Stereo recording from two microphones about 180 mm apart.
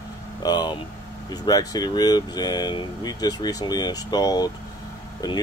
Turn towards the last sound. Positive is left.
turn(degrees=20)  # may be behind; listen again after turning